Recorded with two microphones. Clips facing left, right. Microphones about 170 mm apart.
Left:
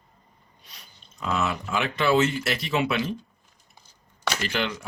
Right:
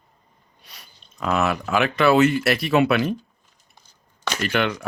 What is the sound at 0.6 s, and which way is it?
Speech, 65° right (ahead or behind).